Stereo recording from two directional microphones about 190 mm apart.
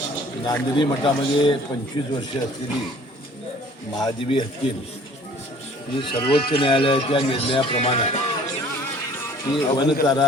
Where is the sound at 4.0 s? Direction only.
20° left (ahead or behind).